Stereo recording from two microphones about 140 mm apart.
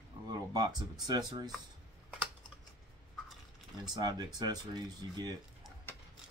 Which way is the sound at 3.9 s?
30° right (ahead or behind).